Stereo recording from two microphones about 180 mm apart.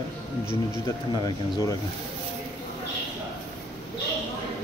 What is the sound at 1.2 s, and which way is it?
Speech, 20° left (ahead or behind).